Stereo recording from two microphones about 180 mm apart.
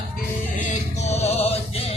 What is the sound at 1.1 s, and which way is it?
Music, 35° left (ahead or behind).